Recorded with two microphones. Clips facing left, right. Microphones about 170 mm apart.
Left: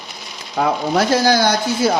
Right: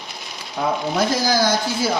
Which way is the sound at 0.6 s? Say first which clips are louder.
Left 3 dB; 70° left (ahead or behind).